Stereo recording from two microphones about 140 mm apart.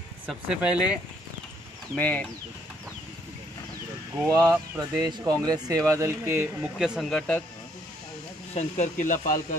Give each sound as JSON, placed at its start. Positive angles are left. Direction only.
{"t": 0.3, "sound": "speech", "side_deg": -5}
{"t": 2.0, "sound": "speech", "side_deg": 10}
{"t": 4.3, "sound": "speech", "side_deg": -25}
{"t": 6.8, "sound": "speech", "side_deg": 0}
{"t": 8.5, "sound": "speech", "side_deg": 55}